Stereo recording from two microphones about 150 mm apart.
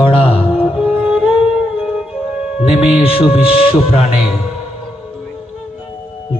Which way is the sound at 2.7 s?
40° left (ahead or behind).